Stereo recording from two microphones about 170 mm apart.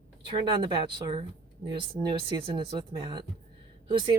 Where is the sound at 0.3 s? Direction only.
30° right (ahead or behind).